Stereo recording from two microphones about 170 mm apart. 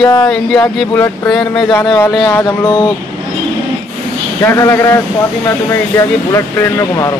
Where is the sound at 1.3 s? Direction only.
Centre (ahead or behind).